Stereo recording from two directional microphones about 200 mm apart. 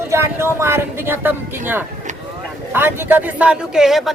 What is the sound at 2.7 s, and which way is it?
Speech, 10° right (ahead or behind).